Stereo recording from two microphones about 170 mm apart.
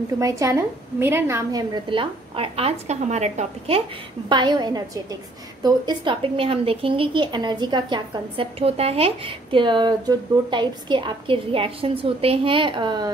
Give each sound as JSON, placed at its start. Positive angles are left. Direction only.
{"t": 0.2, "sound": "a woman's voice", "side_deg": -20}
{"t": 4.3, "sound": "a woman's voice", "side_deg": -25}